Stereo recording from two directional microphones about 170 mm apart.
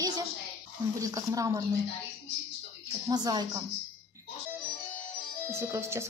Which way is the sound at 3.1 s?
25° right (ahead or behind).